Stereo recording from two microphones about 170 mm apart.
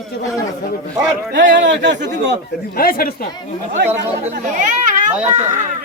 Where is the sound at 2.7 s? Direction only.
60° left (ahead or behind).